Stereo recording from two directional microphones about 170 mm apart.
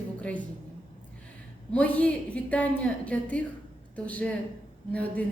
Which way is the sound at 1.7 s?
5° left (ahead or behind).